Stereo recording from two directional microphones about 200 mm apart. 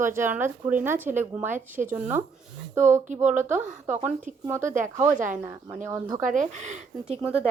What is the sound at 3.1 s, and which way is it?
Speech, 35° right (ahead or behind).